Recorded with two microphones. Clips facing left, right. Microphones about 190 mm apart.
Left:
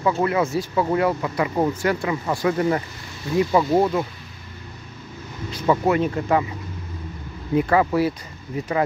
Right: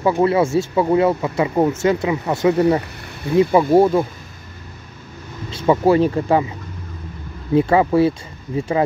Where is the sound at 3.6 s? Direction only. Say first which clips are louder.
Right 6 dB; 50° right (ahead or behind).